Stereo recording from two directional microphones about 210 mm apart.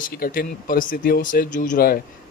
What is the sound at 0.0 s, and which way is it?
Speech, 45° left (ahead or behind).